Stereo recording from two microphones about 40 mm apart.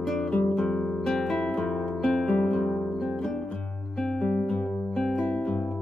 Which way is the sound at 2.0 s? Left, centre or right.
Centre.